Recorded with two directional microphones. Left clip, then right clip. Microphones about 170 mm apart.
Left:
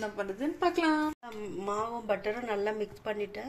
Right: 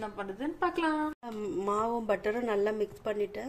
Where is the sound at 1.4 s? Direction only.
40° right (ahead or behind).